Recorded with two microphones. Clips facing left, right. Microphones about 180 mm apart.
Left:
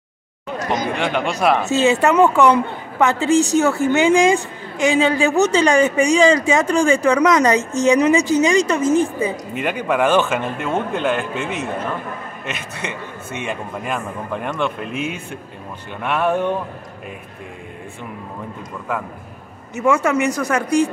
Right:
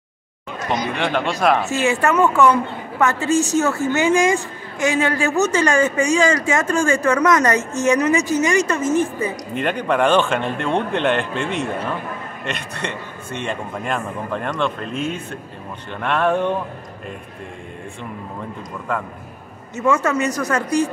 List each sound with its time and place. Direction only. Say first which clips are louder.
0.9 s speech: even; 5° left (ahead or behind)
1.7 s speech: left 3 dB; 20° left (ahead or behind)
18.9 s speech: even; 5° left (ahead or behind)